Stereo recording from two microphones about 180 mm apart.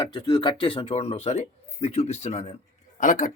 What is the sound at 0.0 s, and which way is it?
A man's voice, 25° left (ahead or behind).